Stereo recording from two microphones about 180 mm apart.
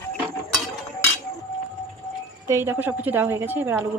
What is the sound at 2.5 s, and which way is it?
A woman's voice, 15° right (ahead or behind).